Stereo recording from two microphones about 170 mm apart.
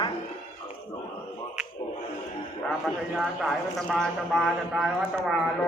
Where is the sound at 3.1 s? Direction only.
Centre (ahead or behind).